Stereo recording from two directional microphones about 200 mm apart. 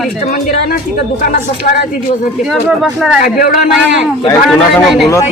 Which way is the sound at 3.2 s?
45° left (ahead or behind).